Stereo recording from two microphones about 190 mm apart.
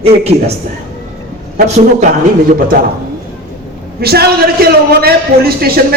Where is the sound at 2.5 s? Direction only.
50° right (ahead or behind).